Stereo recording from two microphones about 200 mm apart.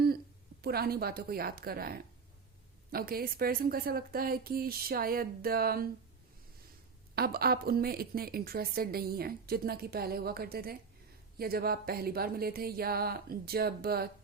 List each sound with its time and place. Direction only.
0.6 s a woman's voice: 50° right (ahead or behind)
7.2 s a woman's voice: 50° right (ahead or behind)